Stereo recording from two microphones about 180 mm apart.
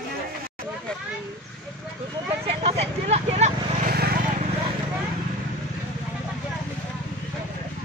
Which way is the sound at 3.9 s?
55° right (ahead or behind).